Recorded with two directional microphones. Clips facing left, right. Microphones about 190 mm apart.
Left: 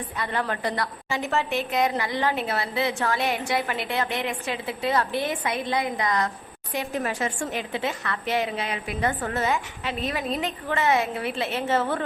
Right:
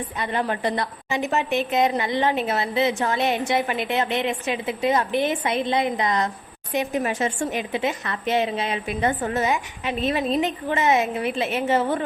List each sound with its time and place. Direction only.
0.2 s a woman's voice: 20° right (ahead or behind)